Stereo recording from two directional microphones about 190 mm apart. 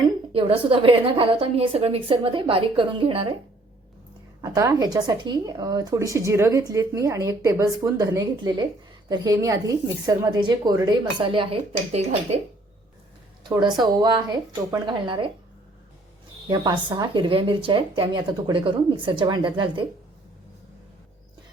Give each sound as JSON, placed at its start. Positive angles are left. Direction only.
{"t": 0.3, "sound": "speech", "side_deg": -30}
{"t": 4.4, "sound": "speech", "side_deg": -20}
{"t": 13.4, "sound": "a woman's voice", "side_deg": -20}
{"t": 16.5, "sound": "speech", "side_deg": -20}